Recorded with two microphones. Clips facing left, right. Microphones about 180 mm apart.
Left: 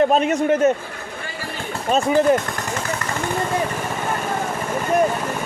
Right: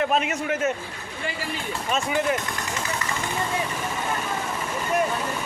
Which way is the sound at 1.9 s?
35° left (ahead or behind).